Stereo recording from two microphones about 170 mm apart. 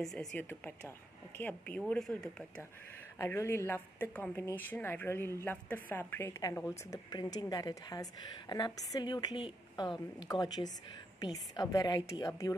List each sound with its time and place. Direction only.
0.0 s a woman's voice: centre (ahead or behind)
3.2 s a woman's voice: 15° left (ahead or behind)